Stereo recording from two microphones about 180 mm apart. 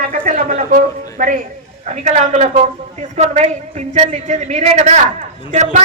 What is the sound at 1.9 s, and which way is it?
A man's voice, 40° right (ahead or behind).